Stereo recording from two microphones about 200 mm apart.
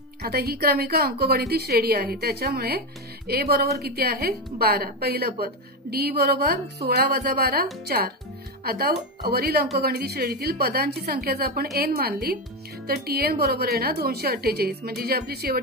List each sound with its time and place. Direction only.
0.2 s a woman's voice: 50° right (ahead or behind)